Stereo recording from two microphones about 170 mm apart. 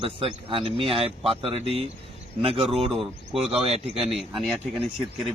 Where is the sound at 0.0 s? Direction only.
30° right (ahead or behind).